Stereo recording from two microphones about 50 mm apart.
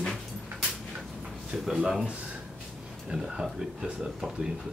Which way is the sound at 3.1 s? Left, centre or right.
Centre.